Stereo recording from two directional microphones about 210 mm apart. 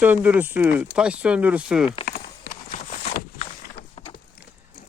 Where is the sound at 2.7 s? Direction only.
35° left (ahead or behind).